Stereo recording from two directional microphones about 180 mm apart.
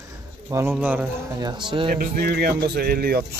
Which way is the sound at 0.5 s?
15° right (ahead or behind).